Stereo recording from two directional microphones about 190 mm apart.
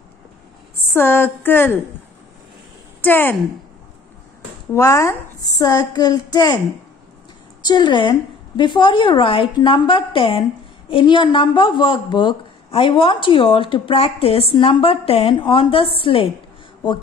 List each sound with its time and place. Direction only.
0.9 s a woman's voice: 10° left (ahead or behind)
3.0 s a woman's voice: 10° left (ahead or behind)
4.7 s a woman's voice: 15° left (ahead or behind)
7.6 s speech: 25° left (ahead or behind)